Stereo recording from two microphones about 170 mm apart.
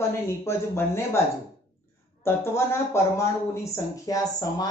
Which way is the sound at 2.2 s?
15° left (ahead or behind).